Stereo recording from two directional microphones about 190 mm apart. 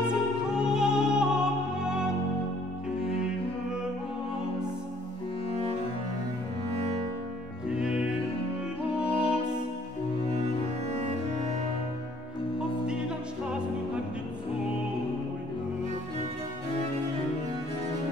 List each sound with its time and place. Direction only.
0.0 s music: 5° right (ahead or behind)
7.6 s music: 5° right (ahead or behind)
9.0 s music: 30° left (ahead or behind)
10.4 s music: 35° right (ahead or behind)